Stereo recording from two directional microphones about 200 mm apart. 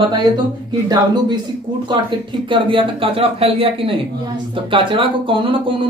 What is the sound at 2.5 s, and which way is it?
Speech, 25° right (ahead or behind).